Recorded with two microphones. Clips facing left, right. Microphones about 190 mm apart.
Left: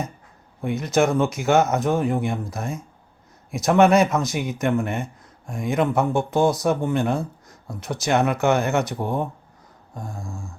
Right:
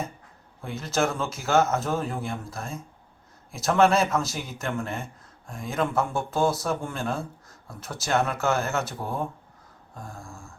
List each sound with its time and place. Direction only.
0.6 s speech: 20° left (ahead or behind)